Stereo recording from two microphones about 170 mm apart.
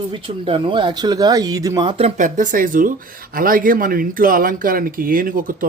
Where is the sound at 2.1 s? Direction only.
50° right (ahead or behind).